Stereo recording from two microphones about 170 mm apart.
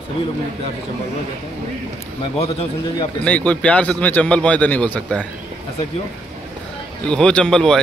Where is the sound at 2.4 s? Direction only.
35° left (ahead or behind).